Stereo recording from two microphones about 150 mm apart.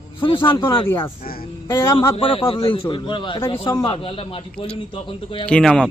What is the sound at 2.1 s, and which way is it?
Speech, 35° left (ahead or behind).